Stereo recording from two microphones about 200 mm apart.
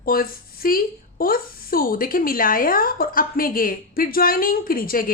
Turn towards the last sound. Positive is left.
turn(degrees=45)  # may be behind; listen again after turning